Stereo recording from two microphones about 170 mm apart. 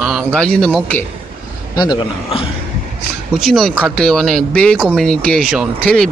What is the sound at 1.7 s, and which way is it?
Speech, 25° left (ahead or behind).